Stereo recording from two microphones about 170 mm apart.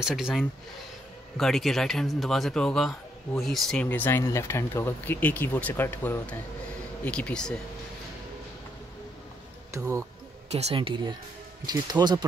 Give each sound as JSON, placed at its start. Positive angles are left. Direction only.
{"t": 0.0, "sound": "a man's voice", "side_deg": 0}
{"t": 9.7, "sound": "speech", "side_deg": -15}
{"t": 10.5, "sound": "speech", "side_deg": -35}